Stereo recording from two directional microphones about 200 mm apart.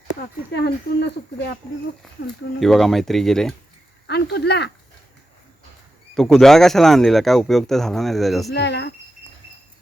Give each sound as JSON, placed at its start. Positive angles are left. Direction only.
{"t": 0.5, "sound": "speech", "side_deg": 60}
{"t": 2.6, "sound": "speech", "side_deg": 0}
{"t": 4.0, "sound": "speech", "side_deg": 55}
{"t": 6.1, "sound": "speech", "side_deg": 0}
{"t": 8.5, "sound": "speech", "side_deg": 60}